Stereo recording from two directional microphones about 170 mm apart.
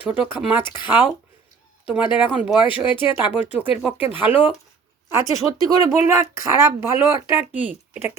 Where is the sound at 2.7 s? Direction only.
30° left (ahead or behind).